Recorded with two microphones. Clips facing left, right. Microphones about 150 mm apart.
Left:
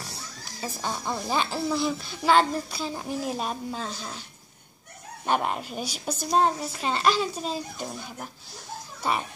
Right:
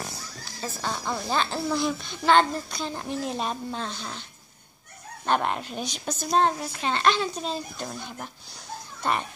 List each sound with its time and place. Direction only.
0.6 s a child's voice: 15° left (ahead or behind)
5.2 s a child's voice: 10° left (ahead or behind)